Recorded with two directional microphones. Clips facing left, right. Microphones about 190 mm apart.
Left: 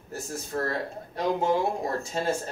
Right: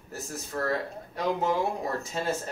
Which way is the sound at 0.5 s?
35° left (ahead or behind).